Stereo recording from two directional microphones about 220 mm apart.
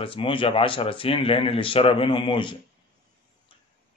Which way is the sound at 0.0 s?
25° left (ahead or behind).